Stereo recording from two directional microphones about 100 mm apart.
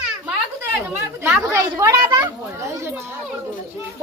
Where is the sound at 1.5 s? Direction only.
30° right (ahead or behind).